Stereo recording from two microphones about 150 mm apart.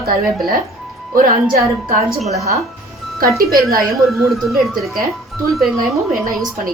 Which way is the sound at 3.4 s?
90° right.